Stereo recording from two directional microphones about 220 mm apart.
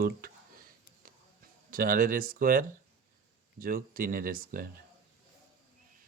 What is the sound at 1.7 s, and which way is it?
Speech, 40° right (ahead or behind).